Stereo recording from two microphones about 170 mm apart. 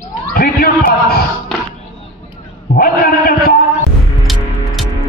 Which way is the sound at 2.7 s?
60° left (ahead or behind).